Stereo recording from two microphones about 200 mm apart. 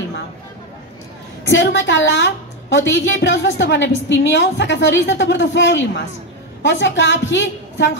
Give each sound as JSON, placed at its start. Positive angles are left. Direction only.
{"t": 1.5, "sound": "a woman's voice", "side_deg": 65}